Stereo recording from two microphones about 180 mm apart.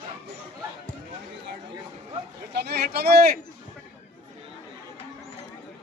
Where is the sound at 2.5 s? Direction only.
65° right (ahead or behind).